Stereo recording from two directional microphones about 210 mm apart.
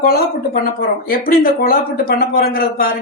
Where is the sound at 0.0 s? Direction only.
45° left (ahead or behind).